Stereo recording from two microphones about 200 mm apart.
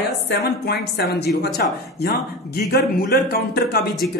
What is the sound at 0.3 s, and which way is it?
A man's voice, 55° left (ahead or behind).